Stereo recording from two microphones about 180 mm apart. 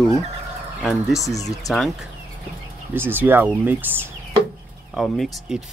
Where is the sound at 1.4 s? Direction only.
20° left (ahead or behind).